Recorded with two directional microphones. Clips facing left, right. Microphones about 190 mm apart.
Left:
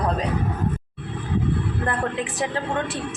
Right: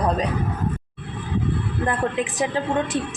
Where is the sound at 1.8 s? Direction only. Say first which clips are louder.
Right 4 dB; 20° right (ahead or behind).